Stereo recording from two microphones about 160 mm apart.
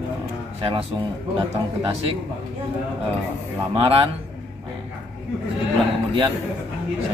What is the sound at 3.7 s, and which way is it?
Speech, 35° right (ahead or behind).